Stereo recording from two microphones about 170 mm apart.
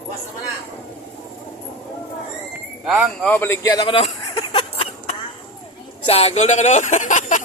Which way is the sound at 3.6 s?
25° left (ahead or behind).